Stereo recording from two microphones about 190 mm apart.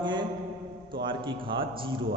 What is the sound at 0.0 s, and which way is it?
Mantra, 25° right (ahead or behind).